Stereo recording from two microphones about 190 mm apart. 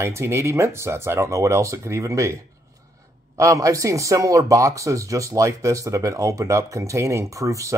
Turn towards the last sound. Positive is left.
turn(degrees=-15)  # may be behind; listen again after turning